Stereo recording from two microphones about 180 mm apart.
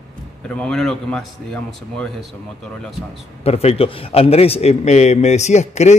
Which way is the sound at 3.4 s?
35° left (ahead or behind).